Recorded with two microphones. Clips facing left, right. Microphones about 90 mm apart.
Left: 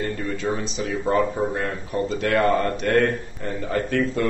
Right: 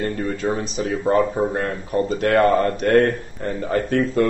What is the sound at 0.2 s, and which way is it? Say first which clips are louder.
Speech: right 3 dB; 35° right (ahead or behind).